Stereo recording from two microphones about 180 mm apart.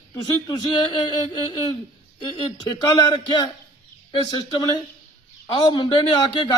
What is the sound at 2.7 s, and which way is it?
A man's voice, 25° left (ahead or behind).